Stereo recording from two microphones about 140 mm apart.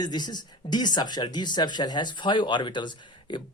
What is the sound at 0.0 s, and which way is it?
Speech, 30° left (ahead or behind).